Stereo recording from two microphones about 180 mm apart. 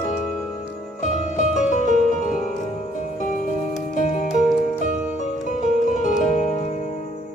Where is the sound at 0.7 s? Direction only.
45° left (ahead or behind).